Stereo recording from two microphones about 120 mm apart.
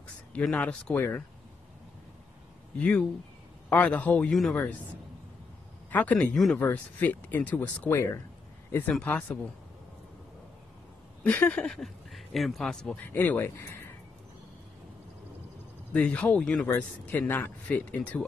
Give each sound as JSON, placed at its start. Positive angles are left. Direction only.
{"t": 0.3, "sound": "speech", "side_deg": 10}
{"t": 2.8, "sound": "speech", "side_deg": 10}
{"t": 5.9, "sound": "speech", "side_deg": 10}
{"t": 6.3, "sound": "speech", "side_deg": 0}
{"t": 6.6, "sound": "speech", "side_deg": 15}
{"t": 11.2, "sound": "speech", "side_deg": 15}
{"t": 15.9, "sound": "speech", "side_deg": 10}